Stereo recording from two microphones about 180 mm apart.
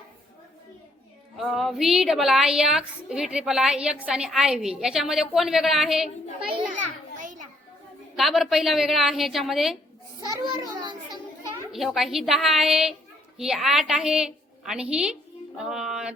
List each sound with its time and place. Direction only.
1.4 s a woman's voice: centre (ahead or behind)
6.7 s children playing: 45° right (ahead or behind)
8.1 s a woman's voice: centre (ahead or behind)
10.3 s a child's voice: 25° right (ahead or behind)
11.7 s a child's voice: centre (ahead or behind)
15.5 s music: 5° right (ahead or behind)